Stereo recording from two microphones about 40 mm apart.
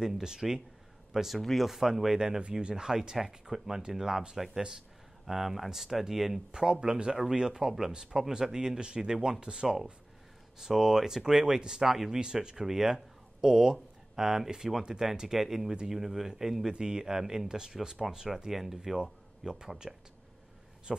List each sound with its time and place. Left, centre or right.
0.2 s speech: centre
1.4 s speech: centre
1.7 s speech: centre
2.1 s speech: centre
16.7 s speech: centre
18.5 s speech: centre